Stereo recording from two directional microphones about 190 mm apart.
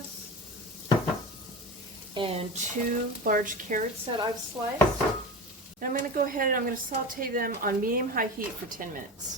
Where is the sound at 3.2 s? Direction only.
45° right (ahead or behind).